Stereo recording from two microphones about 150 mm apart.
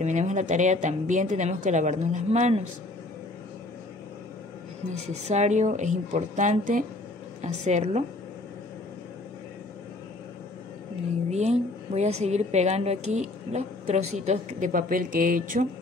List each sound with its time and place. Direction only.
0.0 s a woman's voice: 50° right (ahead or behind)
5.2 s a woman's voice: 50° right (ahead or behind)
11.2 s a woman's voice: 50° right (ahead or behind); by 15.7 s 65° right (ahead or behind)